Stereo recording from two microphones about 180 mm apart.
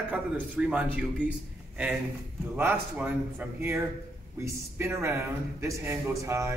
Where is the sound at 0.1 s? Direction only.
5° right (ahead or behind).